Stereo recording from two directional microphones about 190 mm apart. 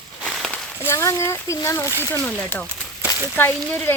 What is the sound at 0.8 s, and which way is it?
Speech, 15° left (ahead or behind).